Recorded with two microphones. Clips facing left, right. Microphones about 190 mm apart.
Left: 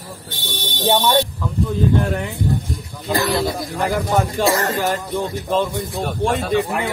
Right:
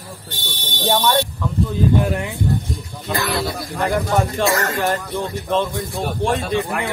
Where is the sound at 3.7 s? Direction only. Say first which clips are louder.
Right 1 dB; 5° left (ahead or behind).